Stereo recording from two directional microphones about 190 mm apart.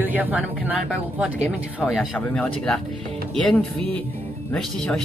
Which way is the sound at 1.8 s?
5° left (ahead or behind).